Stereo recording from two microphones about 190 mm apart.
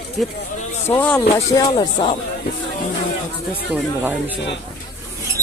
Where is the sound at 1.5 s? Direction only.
20° left (ahead or behind).